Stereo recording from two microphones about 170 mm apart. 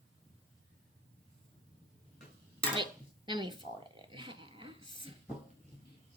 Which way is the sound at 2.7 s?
25° right (ahead or behind).